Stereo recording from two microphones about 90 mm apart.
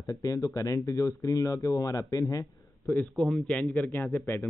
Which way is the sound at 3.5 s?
15° left (ahead or behind).